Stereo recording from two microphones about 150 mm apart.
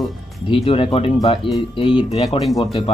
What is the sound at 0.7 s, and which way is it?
Speech, 40° left (ahead or behind).